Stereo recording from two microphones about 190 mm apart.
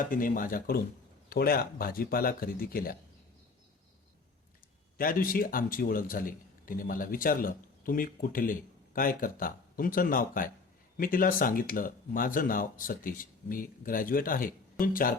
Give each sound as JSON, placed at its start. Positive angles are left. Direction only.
{"t": 0.0, "sound": "speech", "side_deg": 45}
{"t": 4.9, "sound": "speech", "side_deg": 50}